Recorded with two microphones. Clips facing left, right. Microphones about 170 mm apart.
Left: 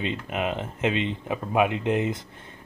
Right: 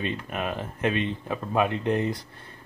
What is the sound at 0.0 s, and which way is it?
Speech, 20° left (ahead or behind).